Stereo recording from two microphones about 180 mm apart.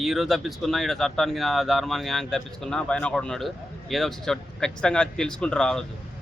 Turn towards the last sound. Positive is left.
turn(degrees=5)  # may be behind; listen again after turning